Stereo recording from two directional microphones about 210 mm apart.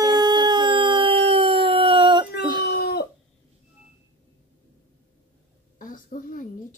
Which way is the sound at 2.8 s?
50° left (ahead or behind).